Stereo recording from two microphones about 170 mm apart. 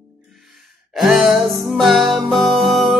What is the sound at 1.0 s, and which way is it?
Music, centre (ahead or behind).